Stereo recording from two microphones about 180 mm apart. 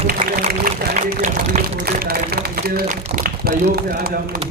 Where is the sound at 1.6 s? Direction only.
55° right (ahead or behind).